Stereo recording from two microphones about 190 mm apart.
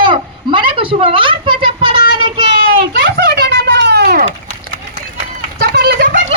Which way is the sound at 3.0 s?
65° right (ahead or behind).